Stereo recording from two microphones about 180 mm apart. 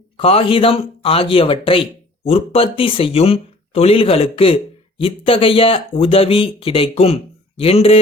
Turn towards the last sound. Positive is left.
turn(degrees=35)  # may be behind; listen again after turning